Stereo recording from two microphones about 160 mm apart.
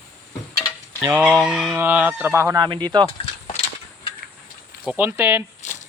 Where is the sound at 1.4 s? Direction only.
5° right (ahead or behind).